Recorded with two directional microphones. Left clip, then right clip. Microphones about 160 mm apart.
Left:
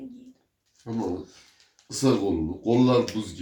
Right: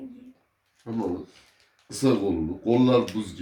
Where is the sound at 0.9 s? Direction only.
Centre (ahead or behind).